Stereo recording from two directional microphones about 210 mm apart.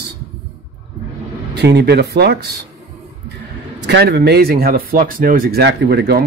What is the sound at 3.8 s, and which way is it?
Speech, 50° right (ahead or behind).